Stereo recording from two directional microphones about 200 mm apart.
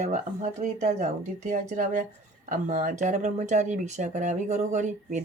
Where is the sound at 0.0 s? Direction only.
35° right (ahead or behind).